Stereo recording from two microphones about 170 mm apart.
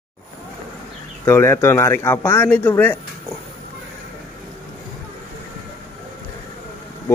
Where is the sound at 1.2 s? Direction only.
15° left (ahead or behind).